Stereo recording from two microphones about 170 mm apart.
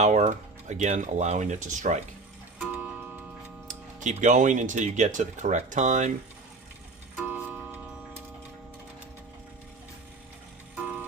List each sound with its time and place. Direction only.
0.0 s speech: 40° right (ahead or behind)
2.6 s music: 5° right (ahead or behind)
4.0 s speech: 45° right (ahead or behind)
7.3 s tick-tock: 10° right (ahead or behind)
10.8 s music: 10° right (ahead or behind)